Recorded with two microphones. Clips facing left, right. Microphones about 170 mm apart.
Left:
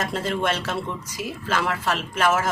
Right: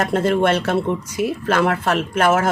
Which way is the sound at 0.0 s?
55° right (ahead or behind).